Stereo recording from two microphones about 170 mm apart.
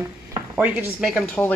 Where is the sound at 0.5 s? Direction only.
10° right (ahead or behind).